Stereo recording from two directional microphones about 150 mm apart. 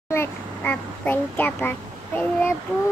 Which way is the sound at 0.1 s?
15° left (ahead or behind).